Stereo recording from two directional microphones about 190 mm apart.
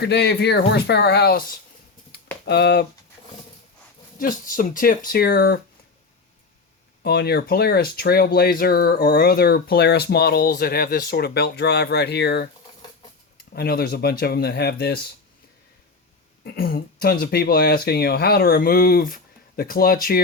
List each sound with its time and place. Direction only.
0.0 s speech: 60° left (ahead or behind)
4.2 s speech: 45° left (ahead or behind)
7.0 s speech: 55° left (ahead or behind)
13.5 s speech: 55° left (ahead or behind)
16.4 s speech: 50° left (ahead or behind)